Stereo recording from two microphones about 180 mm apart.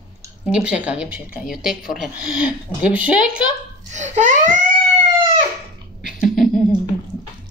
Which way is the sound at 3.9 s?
40° right (ahead or behind).